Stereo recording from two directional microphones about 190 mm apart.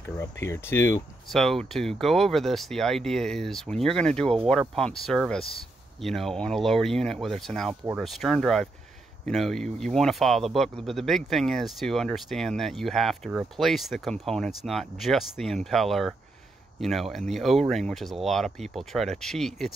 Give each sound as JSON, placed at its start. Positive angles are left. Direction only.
{"t": 0.2, "sound": "speech", "side_deg": 15}
{"t": 1.3, "sound": "speech", "side_deg": 0}